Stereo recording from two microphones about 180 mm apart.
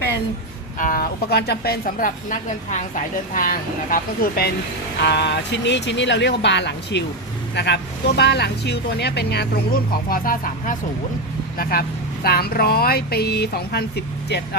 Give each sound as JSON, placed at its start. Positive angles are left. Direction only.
{"t": 0.8, "sound": "a woman's voice", "side_deg": 50}
{"t": 4.9, "sound": "speech", "side_deg": 70}
{"t": 10.1, "sound": "a woman's voice", "side_deg": 50}